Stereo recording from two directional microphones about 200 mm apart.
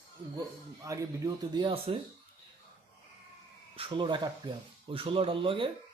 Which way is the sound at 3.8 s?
25° right (ahead or behind).